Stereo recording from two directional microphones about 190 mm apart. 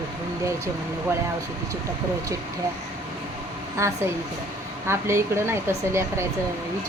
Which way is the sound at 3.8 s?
15° right (ahead or behind).